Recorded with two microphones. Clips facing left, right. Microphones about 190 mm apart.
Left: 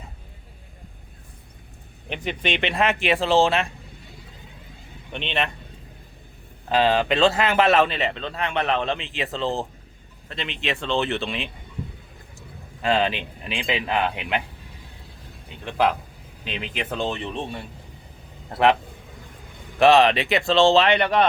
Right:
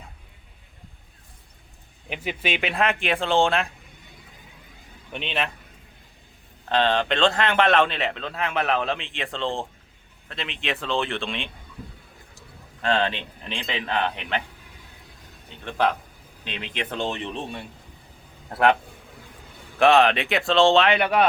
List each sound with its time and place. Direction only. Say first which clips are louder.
2.0 s speech: left 2 dB; 5° right (ahead or behind)
5.1 s speech: left 2 dB; 5° right (ahead or behind)
6.7 s speech: left 2 dB; 5° left (ahead or behind)
11.8 s a sound: left 6 dB; 25° left (ahead or behind)
12.8 s speech: left 2 dB; 5° left (ahead or behind)
15.6 s speech: left 2 dB; 5° left (ahead or behind)
19.8 s speech: left 2 dB; centre (ahead or behind)